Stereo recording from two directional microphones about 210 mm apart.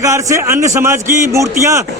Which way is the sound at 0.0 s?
15° right (ahead or behind).